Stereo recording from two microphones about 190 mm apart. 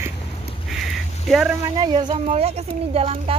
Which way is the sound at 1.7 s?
25° right (ahead or behind).